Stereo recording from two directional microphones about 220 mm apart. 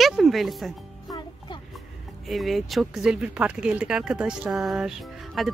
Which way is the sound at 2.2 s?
Centre (ahead or behind).